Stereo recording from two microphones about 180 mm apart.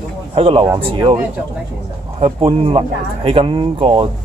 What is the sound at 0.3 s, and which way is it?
Speech, 30° right (ahead or behind).